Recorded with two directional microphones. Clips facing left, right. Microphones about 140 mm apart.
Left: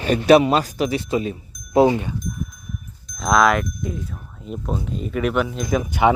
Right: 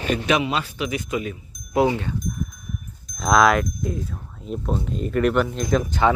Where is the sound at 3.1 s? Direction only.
Centre (ahead or behind).